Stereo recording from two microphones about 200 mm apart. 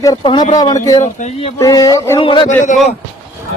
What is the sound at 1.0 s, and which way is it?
Speech, 35° left (ahead or behind).